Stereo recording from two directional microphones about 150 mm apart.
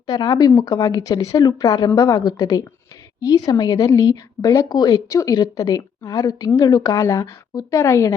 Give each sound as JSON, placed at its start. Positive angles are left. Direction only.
{"t": 0.1, "sound": "speech", "side_deg": 25}